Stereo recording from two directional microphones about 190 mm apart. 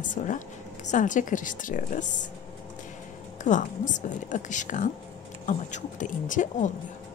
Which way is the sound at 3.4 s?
40° left (ahead or behind).